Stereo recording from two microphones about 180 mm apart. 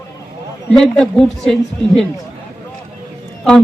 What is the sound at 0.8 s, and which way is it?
Speech, 5° left (ahead or behind).